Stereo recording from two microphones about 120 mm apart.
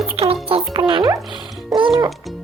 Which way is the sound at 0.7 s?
40° right (ahead or behind).